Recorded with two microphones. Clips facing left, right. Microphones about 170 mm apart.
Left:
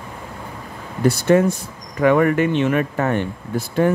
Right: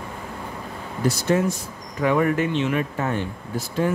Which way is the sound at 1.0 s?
60° left (ahead or behind).